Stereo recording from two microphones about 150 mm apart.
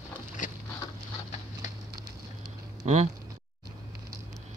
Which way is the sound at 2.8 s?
50° right (ahead or behind).